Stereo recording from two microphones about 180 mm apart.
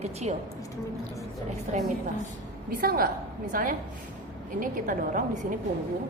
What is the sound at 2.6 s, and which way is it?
A woman's voice, 55° right (ahead or behind).